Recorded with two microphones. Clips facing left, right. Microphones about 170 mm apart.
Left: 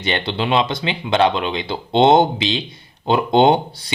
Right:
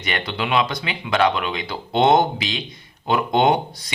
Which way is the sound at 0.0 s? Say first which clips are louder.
Left 4 dB; 30° left (ahead or behind).